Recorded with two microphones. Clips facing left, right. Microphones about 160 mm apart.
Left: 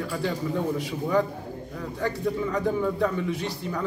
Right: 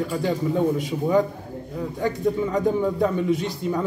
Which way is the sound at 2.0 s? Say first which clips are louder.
Right 4 dB; 20° right (ahead or behind).